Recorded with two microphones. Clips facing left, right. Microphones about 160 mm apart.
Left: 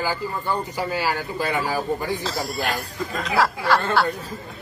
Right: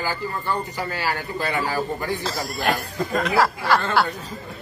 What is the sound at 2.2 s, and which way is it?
Speech, centre (ahead or behind).